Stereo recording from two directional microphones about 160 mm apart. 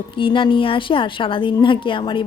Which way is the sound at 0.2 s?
30° left (ahead or behind).